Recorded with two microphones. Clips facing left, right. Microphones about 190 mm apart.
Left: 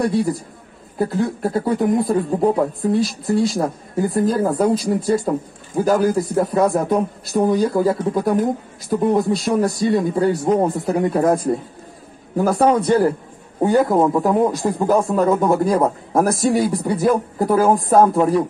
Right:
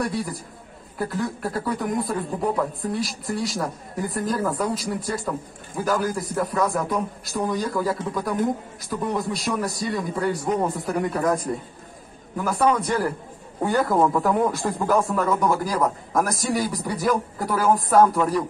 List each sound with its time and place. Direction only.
0.9 s a man's voice: 30° left (ahead or behind)
17.6 s speech: 45° left (ahead or behind)
17.8 s speech: 25° left (ahead or behind)